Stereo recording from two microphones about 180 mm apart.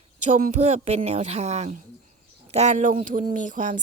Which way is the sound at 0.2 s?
45° right (ahead or behind).